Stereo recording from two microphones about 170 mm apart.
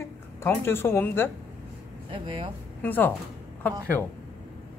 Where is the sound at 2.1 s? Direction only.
30° right (ahead or behind).